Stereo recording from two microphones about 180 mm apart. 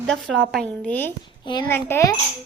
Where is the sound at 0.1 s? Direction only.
Centre (ahead or behind).